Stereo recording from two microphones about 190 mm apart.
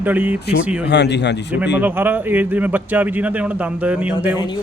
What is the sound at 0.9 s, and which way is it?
Speech, 65° left (ahead or behind).